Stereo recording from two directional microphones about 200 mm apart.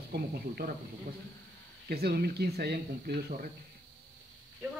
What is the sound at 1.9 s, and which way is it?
Speech, 50° right (ahead or behind).